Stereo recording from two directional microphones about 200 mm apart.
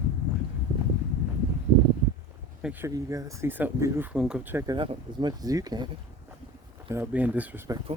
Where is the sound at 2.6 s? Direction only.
10° right (ahead or behind).